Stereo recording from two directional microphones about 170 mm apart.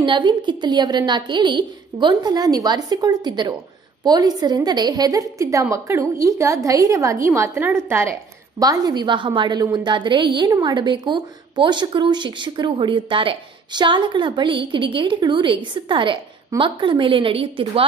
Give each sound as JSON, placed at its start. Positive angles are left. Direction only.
{"t": 0.0, "sound": "a woman's voice", "side_deg": -30}